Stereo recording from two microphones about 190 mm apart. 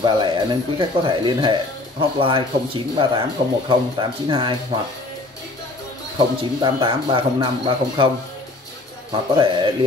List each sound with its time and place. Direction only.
0.0 s speech: 25° right (ahead or behind)
6.1 s speech: 25° right (ahead or behind)
9.3 s speech: 25° right (ahead or behind)